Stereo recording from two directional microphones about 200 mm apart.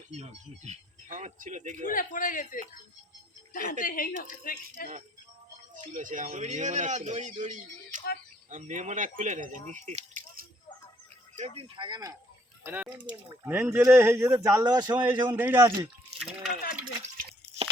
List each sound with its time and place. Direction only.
0.1 s speech: 35° right (ahead or behind)
1.8 s speech: 45° left (ahead or behind)
5.9 s a man's voice: 40° right (ahead or behind); by 12.1 s 20° right (ahead or behind)
12.6 s speech: 10° right (ahead or behind)
15.3 s speech: 10° right (ahead or behind)
16.2 s speech: centre (ahead or behind)